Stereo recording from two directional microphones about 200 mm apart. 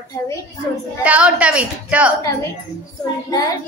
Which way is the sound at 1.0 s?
5° right (ahead or behind).